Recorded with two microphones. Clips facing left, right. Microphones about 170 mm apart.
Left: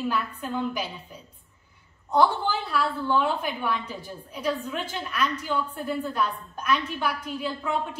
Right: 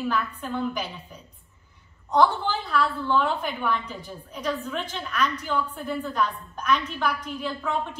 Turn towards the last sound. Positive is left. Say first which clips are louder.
# even
turn(degrees=10)  # may be behind; listen again after turning